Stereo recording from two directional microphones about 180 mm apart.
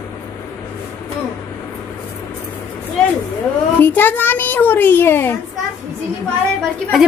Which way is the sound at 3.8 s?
10° left (ahead or behind).